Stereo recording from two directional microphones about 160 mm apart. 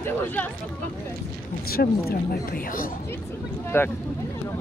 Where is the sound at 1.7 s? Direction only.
70° left (ahead or behind).